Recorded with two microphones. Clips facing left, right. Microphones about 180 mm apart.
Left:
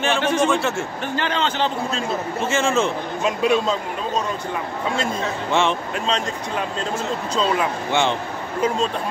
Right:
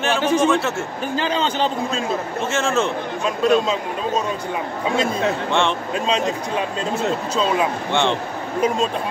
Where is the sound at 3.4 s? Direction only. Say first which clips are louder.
Right 3 dB; 15° left (ahead or behind).